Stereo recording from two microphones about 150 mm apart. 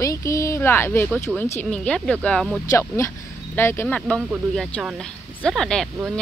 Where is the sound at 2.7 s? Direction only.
20° left (ahead or behind).